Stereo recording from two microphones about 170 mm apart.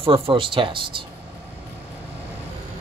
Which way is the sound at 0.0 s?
30° right (ahead or behind).